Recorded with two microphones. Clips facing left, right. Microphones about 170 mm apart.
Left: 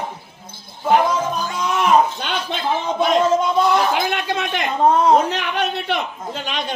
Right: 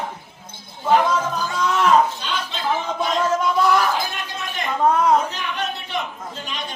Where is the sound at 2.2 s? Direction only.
60° left (ahead or behind).